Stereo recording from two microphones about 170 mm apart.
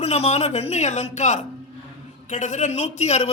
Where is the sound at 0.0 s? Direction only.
40° left (ahead or behind).